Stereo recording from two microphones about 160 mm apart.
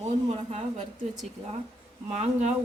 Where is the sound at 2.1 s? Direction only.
45° right (ahead or behind).